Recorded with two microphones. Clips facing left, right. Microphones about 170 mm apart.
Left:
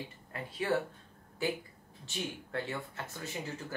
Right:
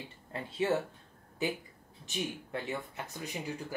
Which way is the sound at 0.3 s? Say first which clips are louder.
Right 3 dB; 25° right (ahead or behind).